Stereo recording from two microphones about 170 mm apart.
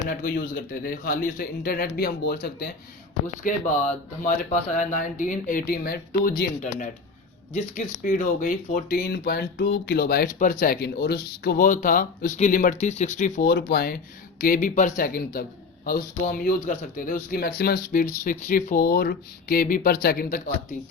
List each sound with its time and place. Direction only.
0.1 s speech: 55° left (ahead or behind)
3.4 s speech: 50° left (ahead or behind)
5.6 s speech: 65° left (ahead or behind)
6.6 s speech: 45° left (ahead or behind); by 10.3 s 65° left (ahead or behind)
10.3 s speech: 50° left (ahead or behind)
13.5 s speech: 70° left (ahead or behind)
18.2 s speech: 50° left (ahead or behind)